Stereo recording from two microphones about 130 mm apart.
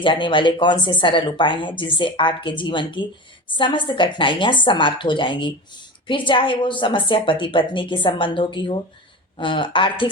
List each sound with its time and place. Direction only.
0.0 s speech: 40° left (ahead or behind)